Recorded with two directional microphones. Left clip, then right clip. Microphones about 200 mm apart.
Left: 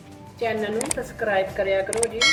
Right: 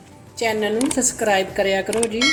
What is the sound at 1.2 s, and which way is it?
Speech, 60° right (ahead or behind).